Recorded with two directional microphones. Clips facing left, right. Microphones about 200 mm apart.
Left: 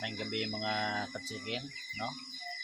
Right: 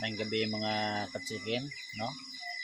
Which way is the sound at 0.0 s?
20° right (ahead or behind).